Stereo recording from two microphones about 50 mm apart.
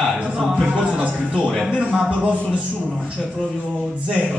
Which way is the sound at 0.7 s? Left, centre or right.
Centre.